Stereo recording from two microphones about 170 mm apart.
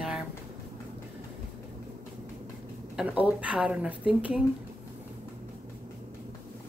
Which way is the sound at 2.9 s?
10° right (ahead or behind).